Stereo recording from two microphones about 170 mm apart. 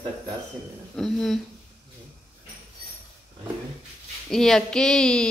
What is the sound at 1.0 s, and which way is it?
Speech, centre (ahead or behind).